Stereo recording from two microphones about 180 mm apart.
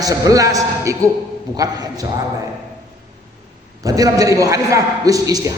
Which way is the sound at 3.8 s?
20° right (ahead or behind).